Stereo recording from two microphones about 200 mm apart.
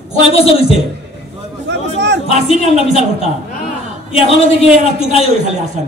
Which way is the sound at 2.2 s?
30° left (ahead or behind).